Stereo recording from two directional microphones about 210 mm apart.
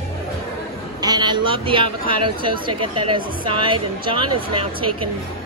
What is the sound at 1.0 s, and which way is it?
Speech, 20° right (ahead or behind).